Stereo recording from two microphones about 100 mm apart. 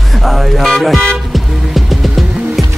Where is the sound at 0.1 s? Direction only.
Centre (ahead or behind).